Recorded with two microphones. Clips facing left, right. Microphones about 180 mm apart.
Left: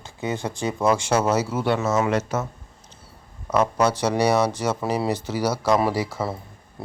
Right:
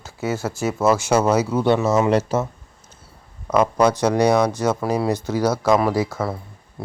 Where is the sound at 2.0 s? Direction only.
30° right (ahead or behind).